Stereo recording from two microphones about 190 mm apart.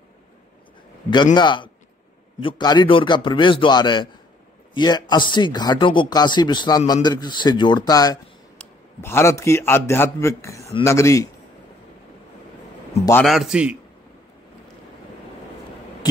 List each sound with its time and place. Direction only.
1.1 s a man's voice: 25° left (ahead or behind)
13.2 s a man's voice: centre (ahead or behind)